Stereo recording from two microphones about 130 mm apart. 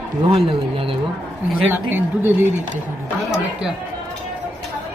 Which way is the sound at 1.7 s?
15° right (ahead or behind).